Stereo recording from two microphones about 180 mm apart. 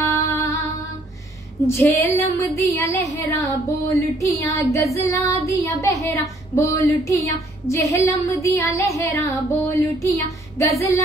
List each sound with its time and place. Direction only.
0.0 s music: 15° left (ahead or behind)
1.7 s child singing: 15° left (ahead or behind)